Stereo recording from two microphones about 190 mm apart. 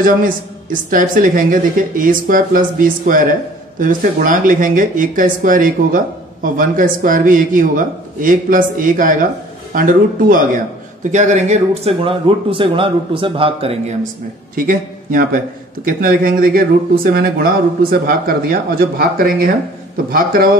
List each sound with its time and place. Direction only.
0.0 s speech: 45° right (ahead or behind); by 13.9 s 30° right (ahead or behind)
14.5 s a man's voice: 50° right (ahead or behind)